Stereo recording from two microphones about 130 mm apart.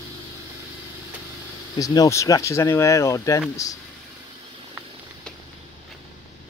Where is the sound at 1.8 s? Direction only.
25° left (ahead or behind).